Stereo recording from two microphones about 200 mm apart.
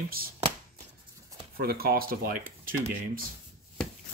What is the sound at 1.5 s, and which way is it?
Speech, 50° right (ahead or behind).